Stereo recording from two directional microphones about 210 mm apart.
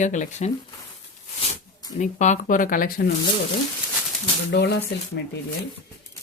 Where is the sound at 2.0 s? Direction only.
35° left (ahead or behind).